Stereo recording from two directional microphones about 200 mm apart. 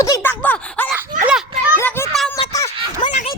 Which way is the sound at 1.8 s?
10° left (ahead or behind).